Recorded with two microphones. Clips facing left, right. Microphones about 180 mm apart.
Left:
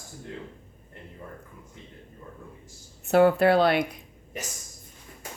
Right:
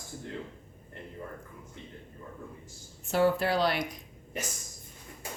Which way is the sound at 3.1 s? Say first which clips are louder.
Left 7 dB; 60° left (ahead or behind).